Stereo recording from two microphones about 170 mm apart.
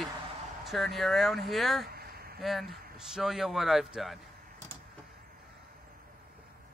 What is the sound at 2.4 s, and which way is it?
A man's voice, centre (ahead or behind).